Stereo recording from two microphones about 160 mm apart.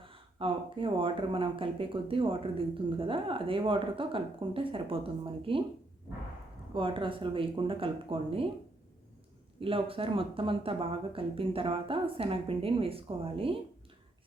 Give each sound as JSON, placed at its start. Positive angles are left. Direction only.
{"t": 0.0, "sound": "speech", "side_deg": -35}
{"t": 6.7, "sound": "speech", "side_deg": -30}
{"t": 9.6, "sound": "speech", "side_deg": -35}